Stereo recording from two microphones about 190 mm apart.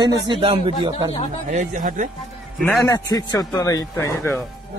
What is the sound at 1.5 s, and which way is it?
Speech, 45° right (ahead or behind).